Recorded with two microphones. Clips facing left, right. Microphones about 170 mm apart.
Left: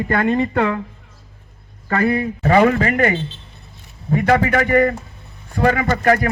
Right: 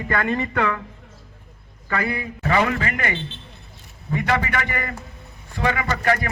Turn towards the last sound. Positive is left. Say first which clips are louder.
# left 6 dB
turn(degrees=45)  # may be behind; listen again after turning